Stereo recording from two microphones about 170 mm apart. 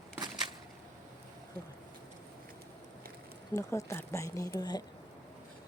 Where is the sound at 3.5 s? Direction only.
20° left (ahead or behind).